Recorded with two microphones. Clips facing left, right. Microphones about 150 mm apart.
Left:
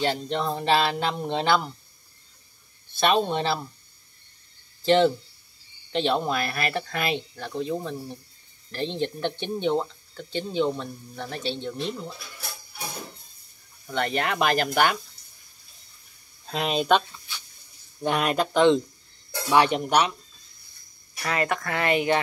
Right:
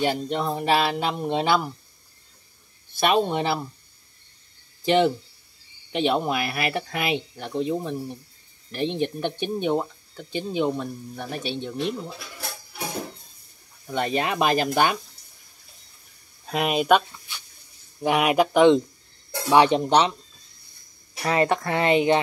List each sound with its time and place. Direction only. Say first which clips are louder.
0.0 s speech: right 2 dB; 10° right (ahead or behind)
3.0 s speech: right 1 dB; 10° right (ahead or behind)
4.8 s speech: even; 15° right (ahead or behind)
13.8 s speech: right 2 dB; 15° right (ahead or behind)
16.4 s speech: right 3 dB; 10° right (ahead or behind)
18.0 s speech: right 4 dB; 10° right (ahead or behind)
21.2 s speech: right 5 dB; 30° right (ahead or behind)